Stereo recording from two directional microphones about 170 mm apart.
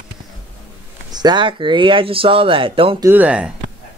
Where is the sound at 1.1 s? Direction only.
25° right (ahead or behind).